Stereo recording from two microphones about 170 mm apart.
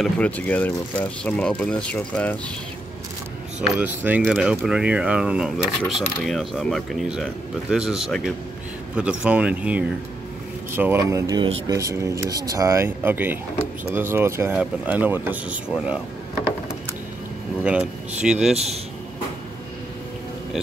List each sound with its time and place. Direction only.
0.0 s speech: 10° left (ahead or behind)
3.6 s speech: 10° right (ahead or behind)
17.6 s speech: 5° right (ahead or behind)
18.5 s a man's voice: 40° right (ahead or behind)